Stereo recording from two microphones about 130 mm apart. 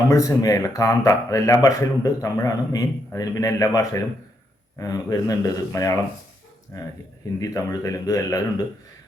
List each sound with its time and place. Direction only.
0.1 s a man's voice: 25° left (ahead or behind)
4.8 s a man's voice: 25° left (ahead or behind)
7.3 s a man's voice: 25° left (ahead or behind)